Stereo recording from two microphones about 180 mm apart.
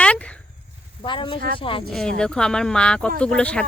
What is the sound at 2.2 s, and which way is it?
Speech, 5° left (ahead or behind).